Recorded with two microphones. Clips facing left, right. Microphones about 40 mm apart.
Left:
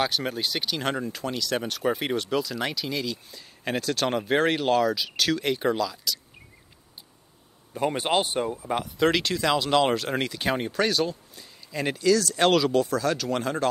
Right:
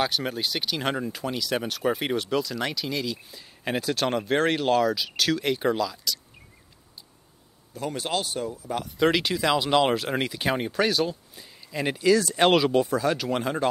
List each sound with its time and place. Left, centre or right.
0.0 s speech: centre
7.7 s speech: left
8.9 s speech: centre
12.1 s speech: right